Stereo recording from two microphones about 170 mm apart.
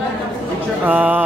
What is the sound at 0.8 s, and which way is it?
Speech, 10° right (ahead or behind).